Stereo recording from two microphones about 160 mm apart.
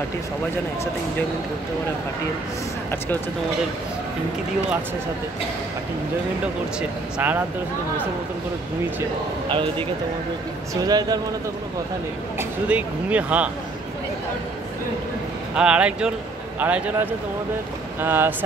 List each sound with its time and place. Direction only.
7.2 s speech: 10° right (ahead or behind)
9.5 s a man's voice: 30° right (ahead or behind)
12.4 s speech: 10° right (ahead or behind)
15.5 s speech: 5° right (ahead or behind)